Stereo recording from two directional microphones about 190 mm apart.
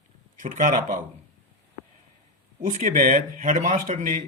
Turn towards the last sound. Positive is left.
turn(degrees=-45)  # may be behind; listen again after turning